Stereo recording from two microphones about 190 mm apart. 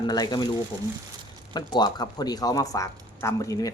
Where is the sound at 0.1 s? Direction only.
20° left (ahead or behind).